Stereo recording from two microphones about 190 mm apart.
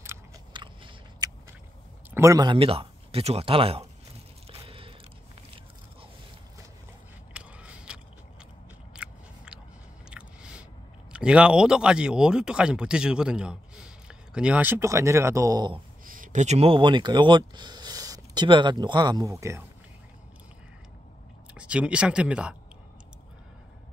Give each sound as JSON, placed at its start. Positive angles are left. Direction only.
{"t": 0.5, "sound": "biting", "side_deg": -25}
{"t": 2.0, "sound": "speech", "side_deg": -15}
{"t": 4.5, "sound": "biting", "side_deg": -30}
{"t": 7.3, "sound": "biting", "side_deg": -5}
{"t": 10.0, "sound": "chewing", "side_deg": -5}
{"t": 11.1, "sound": "speech", "side_deg": -5}
{"t": 16.1, "sound": "a man's voice", "side_deg": -45}
{"t": 21.5, "sound": "speech", "side_deg": -5}